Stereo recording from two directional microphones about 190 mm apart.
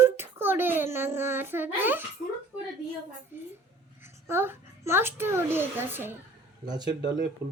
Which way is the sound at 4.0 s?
10° right (ahead or behind).